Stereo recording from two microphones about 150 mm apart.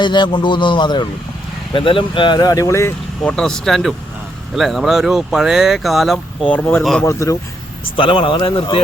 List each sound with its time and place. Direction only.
0.0 s speech: 30° left (ahead or behind)
3.2 s speech: 5° left (ahead or behind)
7.0 s speech: 20° left (ahead or behind)
7.9 s speech: 35° left (ahead or behind)